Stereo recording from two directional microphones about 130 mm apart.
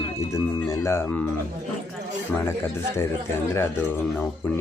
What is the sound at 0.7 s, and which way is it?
Speech, 20° left (ahead or behind).